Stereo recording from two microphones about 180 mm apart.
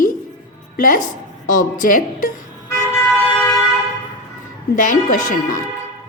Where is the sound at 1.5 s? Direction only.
50° left (ahead or behind).